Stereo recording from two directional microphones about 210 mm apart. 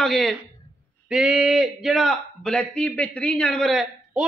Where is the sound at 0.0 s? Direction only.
Centre (ahead or behind).